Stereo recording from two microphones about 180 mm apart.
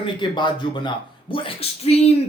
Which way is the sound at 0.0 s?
25° left (ahead or behind).